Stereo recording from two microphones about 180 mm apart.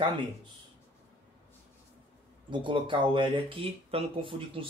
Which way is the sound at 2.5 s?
25° right (ahead or behind).